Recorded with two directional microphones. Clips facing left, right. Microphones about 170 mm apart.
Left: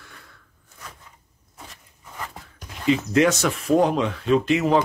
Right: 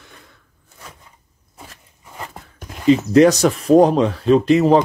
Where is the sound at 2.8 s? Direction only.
35° right (ahead or behind).